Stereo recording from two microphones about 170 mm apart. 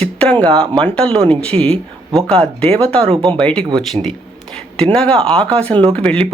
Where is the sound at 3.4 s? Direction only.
5° left (ahead or behind).